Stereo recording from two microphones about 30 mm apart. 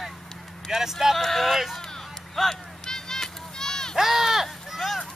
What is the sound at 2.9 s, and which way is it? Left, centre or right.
Children playing, centre.